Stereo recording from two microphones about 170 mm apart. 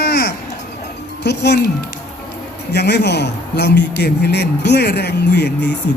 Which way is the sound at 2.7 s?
80° left.